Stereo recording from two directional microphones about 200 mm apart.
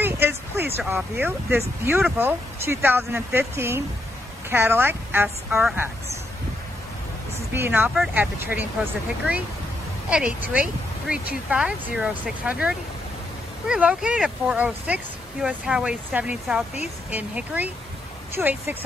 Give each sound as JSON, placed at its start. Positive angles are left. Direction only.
{"t": 0.0, "sound": "speech", "side_deg": -10}
{"t": 7.5, "sound": "speech", "side_deg": -10}
{"t": 10.0, "sound": "speech", "side_deg": -5}